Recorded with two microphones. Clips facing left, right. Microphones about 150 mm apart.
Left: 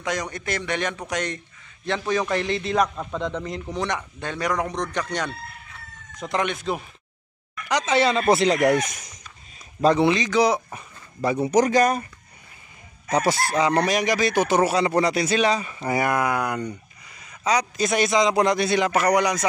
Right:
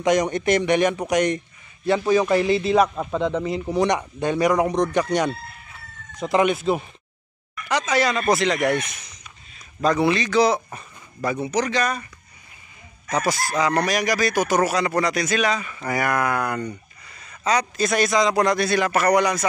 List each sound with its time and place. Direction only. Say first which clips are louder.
0.0 s a man's voice: right 9 dB; 20° right (ahead or behind)
7.8 s speech: left 2 dB; 25° left (ahead or behind); by 9.2 s 45° left (ahead or behind)
9.8 s a man's voice: left 1 dB; 25° left (ahead or behind)
11.3 s speech: left 6 dB; 40° left (ahead or behind)
13.1 s speech: left 2 dB; 30° left (ahead or behind); by 19.4 s 15° left (ahead or behind)